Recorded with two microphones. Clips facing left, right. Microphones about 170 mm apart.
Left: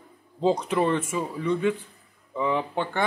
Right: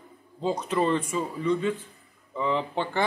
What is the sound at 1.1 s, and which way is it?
Speech, 10° left (ahead or behind).